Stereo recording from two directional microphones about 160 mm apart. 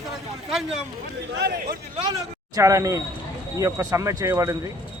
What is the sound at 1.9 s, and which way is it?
Speech, 25° right (ahead or behind).